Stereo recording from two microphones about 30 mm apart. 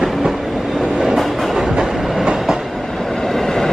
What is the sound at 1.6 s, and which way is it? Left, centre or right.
Train, right.